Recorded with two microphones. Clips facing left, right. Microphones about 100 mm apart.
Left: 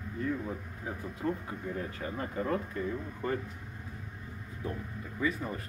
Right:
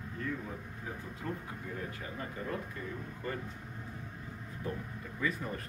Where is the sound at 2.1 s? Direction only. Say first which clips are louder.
Left 8 dB; 40° left (ahead or behind).